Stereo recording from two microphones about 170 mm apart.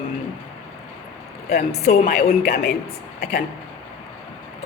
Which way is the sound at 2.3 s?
65° left (ahead or behind).